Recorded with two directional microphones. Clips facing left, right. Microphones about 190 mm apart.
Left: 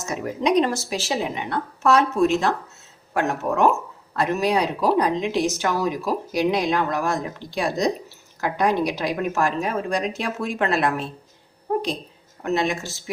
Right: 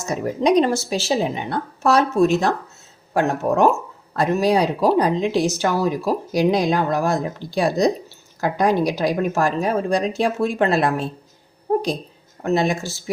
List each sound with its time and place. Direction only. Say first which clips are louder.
0.0 s speech: right 4 dB; 35° right (ahead or behind)
12.4 s speech: right 3 dB; 35° right (ahead or behind)